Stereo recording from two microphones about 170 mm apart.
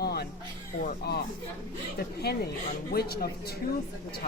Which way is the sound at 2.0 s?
70° left (ahead or behind).